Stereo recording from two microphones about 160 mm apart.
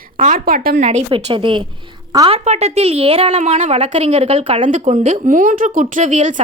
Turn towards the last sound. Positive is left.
turn(degrees=-50)  # may be behind; listen again after turning